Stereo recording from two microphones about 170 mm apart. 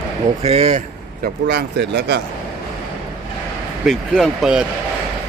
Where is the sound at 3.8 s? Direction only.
5° left (ahead or behind).